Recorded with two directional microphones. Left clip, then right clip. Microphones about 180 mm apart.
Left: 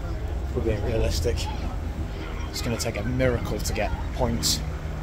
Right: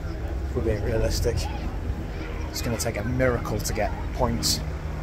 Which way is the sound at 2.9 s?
20° left (ahead or behind).